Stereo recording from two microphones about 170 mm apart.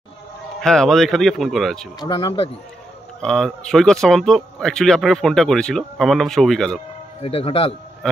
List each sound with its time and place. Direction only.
0.6 s speech: 5° left (ahead or behind)
2.0 s speech: 25° left (ahead or behind)
3.2 s speech: 5° left (ahead or behind)
7.2 s speech: 35° left (ahead or behind)